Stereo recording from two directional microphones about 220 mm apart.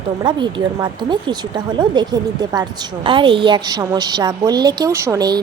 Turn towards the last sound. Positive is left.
turn(degrees=-15)  # may be behind; listen again after turning